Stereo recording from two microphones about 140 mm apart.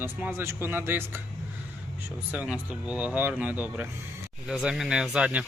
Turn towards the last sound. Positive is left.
turn(degrees=-10)  # may be behind; listen again after turning